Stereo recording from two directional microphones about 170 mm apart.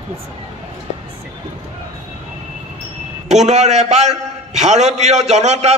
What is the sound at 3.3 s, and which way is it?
A man's voice, 40° right (ahead or behind).